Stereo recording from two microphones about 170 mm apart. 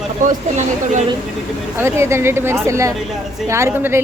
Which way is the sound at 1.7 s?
15° right (ahead or behind).